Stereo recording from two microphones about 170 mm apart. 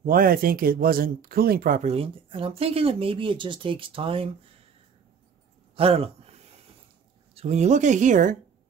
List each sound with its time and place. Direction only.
0.0 s speech: 55° right (ahead or behind)
1.9 s speech: 35° right (ahead or behind)
5.8 s speech: 35° right (ahead or behind)
7.3 s speech: 40° right (ahead or behind)